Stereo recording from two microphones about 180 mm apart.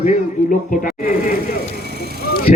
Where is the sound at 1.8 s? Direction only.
60° right (ahead or behind).